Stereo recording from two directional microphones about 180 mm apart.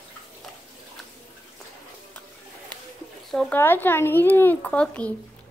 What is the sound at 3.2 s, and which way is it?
Speech, 5° left (ahead or behind).